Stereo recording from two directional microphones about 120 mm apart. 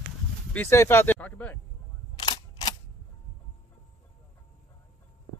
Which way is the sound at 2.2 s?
35° left (ahead or behind).